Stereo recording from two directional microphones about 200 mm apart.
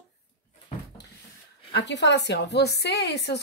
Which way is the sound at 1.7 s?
60° left (ahead or behind).